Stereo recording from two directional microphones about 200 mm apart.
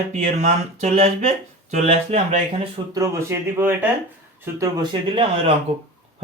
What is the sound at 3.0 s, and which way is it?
Speech, 15° right (ahead or behind).